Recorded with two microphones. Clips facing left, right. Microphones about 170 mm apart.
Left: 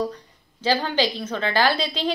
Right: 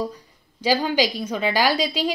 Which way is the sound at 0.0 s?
10° right (ahead or behind).